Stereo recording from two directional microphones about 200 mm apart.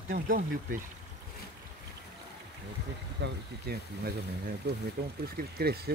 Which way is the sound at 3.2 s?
50° right (ahead or behind).